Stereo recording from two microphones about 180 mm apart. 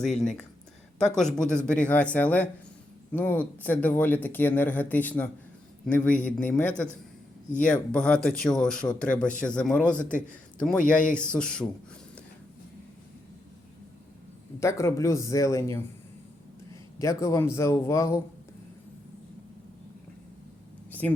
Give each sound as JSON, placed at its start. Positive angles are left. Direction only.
{"t": 0.0, "sound": "a man's voice", "side_deg": 0}
{"t": 7.5, "sound": "speech", "side_deg": 45}
{"t": 7.9, "sound": "a man's voice", "side_deg": 5}
{"t": 10.0, "sound": "speech", "side_deg": 45}
{"t": 11.1, "sound": "a man's voice", "side_deg": 5}
{"t": 14.6, "sound": "speech", "side_deg": 15}
{"t": 17.0, "sound": "speech", "side_deg": 15}